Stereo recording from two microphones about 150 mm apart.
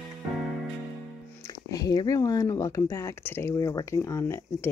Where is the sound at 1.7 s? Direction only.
25° left (ahead or behind).